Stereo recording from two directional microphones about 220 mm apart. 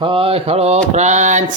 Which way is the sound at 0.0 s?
25° right (ahead or behind).